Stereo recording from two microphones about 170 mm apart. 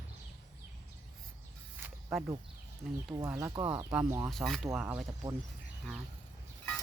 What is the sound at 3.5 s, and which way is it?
Speech, 25° right (ahead or behind).